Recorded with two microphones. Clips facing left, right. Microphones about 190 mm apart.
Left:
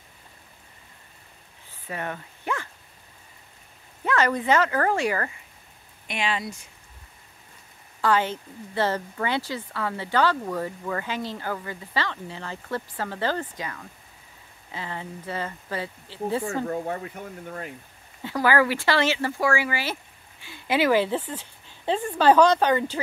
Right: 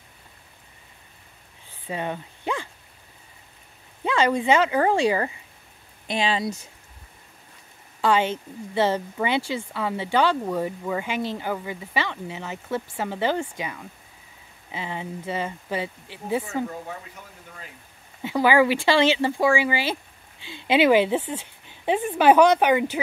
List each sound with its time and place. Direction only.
1.9 s a sound: 20° right (ahead or behind)
4.0 s speech: 15° right (ahead or behind)
6.0 s speech: 30° right (ahead or behind)
8.0 s speech: 20° right (ahead or behind)
16.6 s speech: 55° left (ahead or behind)
18.2 s speech: 20° right (ahead or behind)